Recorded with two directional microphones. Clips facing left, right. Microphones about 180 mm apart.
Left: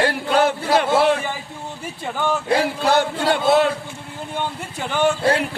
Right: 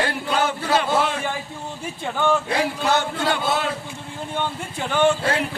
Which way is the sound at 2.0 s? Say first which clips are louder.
Right 2 dB; 10° left (ahead or behind).